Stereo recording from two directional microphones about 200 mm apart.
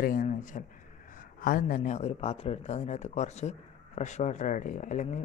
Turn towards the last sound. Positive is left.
turn(degrees=35)  # may be behind; listen again after turning